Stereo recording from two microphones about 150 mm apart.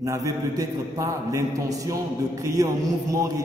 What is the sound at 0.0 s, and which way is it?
A man's voice, 25° right (ahead or behind).